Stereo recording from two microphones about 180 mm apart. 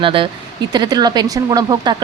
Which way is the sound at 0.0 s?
30° right (ahead or behind).